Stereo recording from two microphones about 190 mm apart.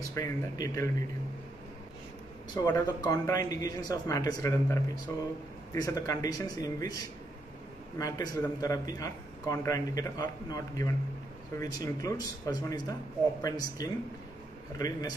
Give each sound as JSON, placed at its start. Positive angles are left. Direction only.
{"t": 0.1, "sound": "speech", "side_deg": 15}
{"t": 2.6, "sound": "a man's voice", "side_deg": 15}
{"t": 8.0, "sound": "a man's voice", "side_deg": 20}